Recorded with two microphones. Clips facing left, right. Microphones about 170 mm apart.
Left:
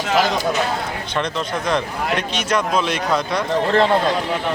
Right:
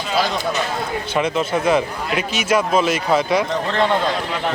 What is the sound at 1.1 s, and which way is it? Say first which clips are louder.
A man's voice: right 4 dB; 5° right (ahead or behind).